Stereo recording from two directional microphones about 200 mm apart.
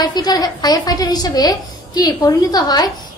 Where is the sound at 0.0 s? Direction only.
20° left (ahead or behind).